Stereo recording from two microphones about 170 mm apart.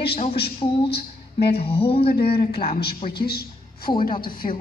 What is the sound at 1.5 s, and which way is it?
Speech, 35° left (ahead or behind).